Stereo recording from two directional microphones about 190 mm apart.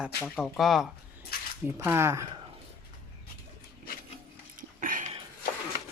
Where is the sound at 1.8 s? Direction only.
15° right (ahead or behind).